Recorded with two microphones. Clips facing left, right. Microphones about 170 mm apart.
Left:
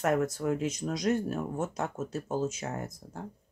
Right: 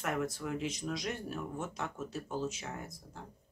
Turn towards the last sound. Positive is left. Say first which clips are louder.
# left 7 dB
turn(degrees=45)  # may be behind; listen again after turning